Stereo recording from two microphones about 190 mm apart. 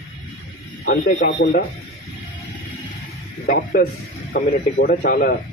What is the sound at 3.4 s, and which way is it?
A man's voice, 50° left (ahead or behind).